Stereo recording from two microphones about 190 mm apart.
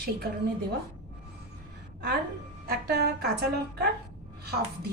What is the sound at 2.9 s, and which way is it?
Speech, 55° right (ahead or behind).